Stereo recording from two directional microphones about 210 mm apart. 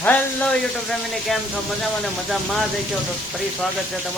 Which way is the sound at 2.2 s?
Centre (ahead or behind).